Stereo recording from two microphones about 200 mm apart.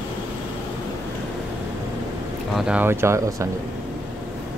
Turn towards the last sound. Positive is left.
turn(degrees=-15)  # may be behind; listen again after turning